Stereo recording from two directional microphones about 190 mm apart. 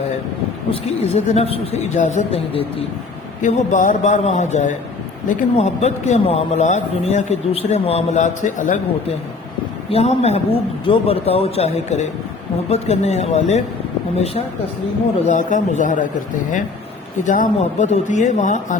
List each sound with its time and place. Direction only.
0.7 s speech: 35° left (ahead or behind)
3.4 s speech: 40° left (ahead or behind)
9.9 s speech: 35° left (ahead or behind)
15.3 s speech: 40° left (ahead or behind)
17.2 s speech: 40° left (ahead or behind)